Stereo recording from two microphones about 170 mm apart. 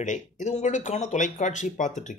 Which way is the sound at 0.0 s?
45° left (ahead or behind).